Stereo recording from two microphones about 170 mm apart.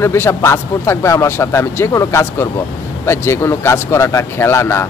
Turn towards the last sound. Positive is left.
turn(degrees=15)  # may be behind; listen again after turning